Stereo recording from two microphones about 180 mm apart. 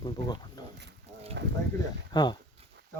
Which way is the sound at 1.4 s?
75° right (ahead or behind).